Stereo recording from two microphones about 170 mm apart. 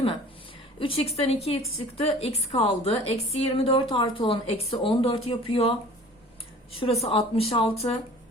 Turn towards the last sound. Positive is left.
turn(degrees=35)  # may be behind; listen again after turning